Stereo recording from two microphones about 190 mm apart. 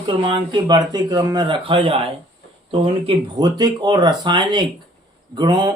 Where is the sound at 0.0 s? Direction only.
25° right (ahead or behind).